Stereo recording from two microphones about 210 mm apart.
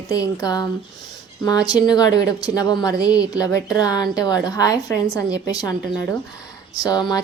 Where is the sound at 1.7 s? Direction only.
20° left (ahead or behind).